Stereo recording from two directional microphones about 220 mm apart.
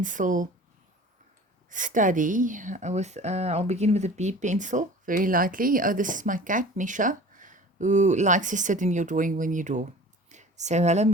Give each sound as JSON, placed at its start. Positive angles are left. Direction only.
{"t": 0.0, "sound": "a woman's voice", "side_deg": -35}
{"t": 1.7, "sound": "a woman's voice", "side_deg": -35}
{"t": 10.2, "sound": "a sound", "side_deg": -30}